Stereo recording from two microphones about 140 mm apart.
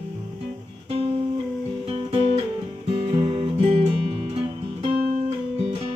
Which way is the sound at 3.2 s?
40° right (ahead or behind).